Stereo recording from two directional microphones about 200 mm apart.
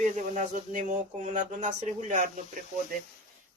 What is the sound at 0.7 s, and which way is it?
Speech, 40° right (ahead or behind).